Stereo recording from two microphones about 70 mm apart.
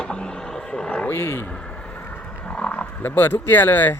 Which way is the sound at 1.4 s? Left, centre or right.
Centre.